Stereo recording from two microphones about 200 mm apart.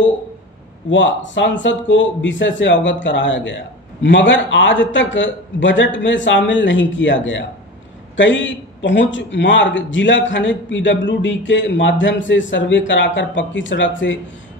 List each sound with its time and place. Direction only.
0.8 s a man's voice: 65° left (ahead or behind)